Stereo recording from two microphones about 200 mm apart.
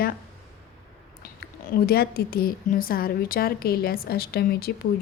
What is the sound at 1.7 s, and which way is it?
Speech, 50° left (ahead or behind).